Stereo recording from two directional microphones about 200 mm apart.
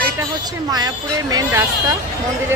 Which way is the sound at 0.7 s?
20° right (ahead or behind).